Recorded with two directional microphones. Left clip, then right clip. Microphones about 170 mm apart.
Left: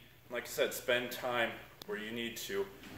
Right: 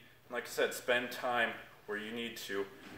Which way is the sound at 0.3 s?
15° left (ahead or behind).